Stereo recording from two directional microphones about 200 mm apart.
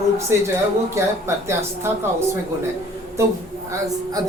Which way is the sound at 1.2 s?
15° right (ahead or behind).